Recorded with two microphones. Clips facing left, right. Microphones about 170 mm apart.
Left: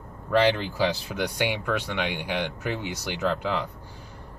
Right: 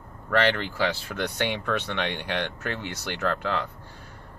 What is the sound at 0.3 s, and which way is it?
Speech, 15° left (ahead or behind).